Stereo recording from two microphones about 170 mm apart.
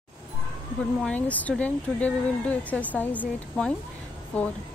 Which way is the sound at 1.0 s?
10° left (ahead or behind).